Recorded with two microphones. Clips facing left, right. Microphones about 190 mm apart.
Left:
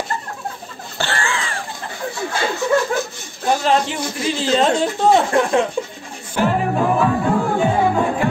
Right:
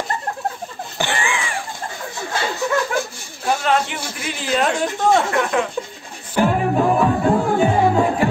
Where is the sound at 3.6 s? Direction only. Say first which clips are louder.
Left 2 dB; 30° left (ahead or behind).